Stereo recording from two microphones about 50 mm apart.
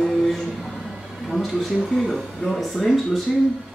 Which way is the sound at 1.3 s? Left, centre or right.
Centre.